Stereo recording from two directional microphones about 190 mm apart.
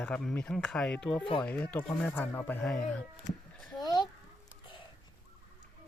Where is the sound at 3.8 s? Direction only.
20° left (ahead or behind).